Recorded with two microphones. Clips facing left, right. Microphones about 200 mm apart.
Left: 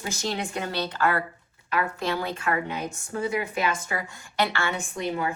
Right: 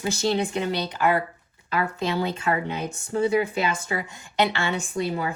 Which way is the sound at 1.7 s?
30° right (ahead or behind).